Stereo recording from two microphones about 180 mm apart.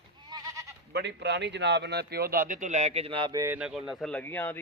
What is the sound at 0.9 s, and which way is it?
A man's voice, 70° right (ahead or behind).